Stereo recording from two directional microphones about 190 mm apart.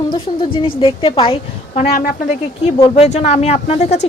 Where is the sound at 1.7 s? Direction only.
45° left (ahead or behind).